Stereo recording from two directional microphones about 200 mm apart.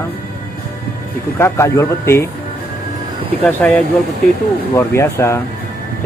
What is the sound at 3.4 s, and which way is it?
Speech, 5° left (ahead or behind).